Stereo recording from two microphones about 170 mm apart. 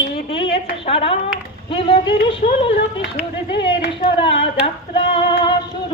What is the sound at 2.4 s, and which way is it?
Speech, 55° left (ahead or behind).